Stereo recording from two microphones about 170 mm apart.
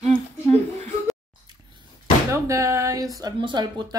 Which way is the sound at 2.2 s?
15° right (ahead or behind).